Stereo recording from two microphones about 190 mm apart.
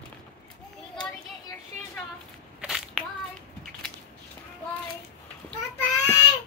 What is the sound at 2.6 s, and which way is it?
Crushing, 5° right (ahead or behind).